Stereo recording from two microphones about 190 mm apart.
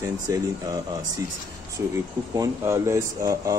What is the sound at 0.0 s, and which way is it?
Speech, 15° right (ahead or behind).